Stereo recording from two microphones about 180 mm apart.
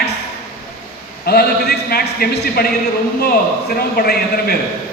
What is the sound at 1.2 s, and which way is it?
A man's voice, 60° left (ahead or behind).